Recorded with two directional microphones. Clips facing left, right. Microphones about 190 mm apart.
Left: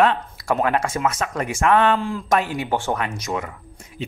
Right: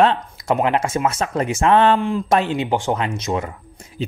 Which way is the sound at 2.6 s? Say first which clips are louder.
Right 3 dB; 15° right (ahead or behind).